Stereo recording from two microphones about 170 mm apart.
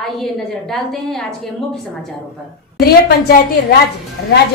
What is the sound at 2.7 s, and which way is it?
A woman's voice, 65° left (ahead or behind).